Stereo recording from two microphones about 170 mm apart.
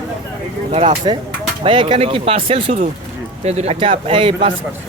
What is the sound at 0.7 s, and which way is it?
Speech, 35° right (ahead or behind).